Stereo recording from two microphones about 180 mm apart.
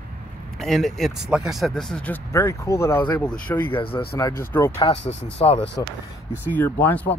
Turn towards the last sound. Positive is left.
turn(degrees=10)  # may be behind; listen again after turning